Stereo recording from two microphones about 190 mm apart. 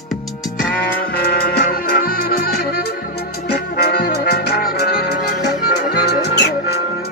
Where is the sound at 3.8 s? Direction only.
55° left (ahead or behind).